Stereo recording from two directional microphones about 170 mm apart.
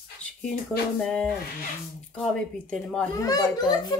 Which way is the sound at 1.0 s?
5° left (ahead or behind).